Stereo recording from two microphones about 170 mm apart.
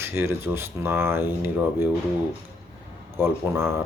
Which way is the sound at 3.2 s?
15° right (ahead or behind).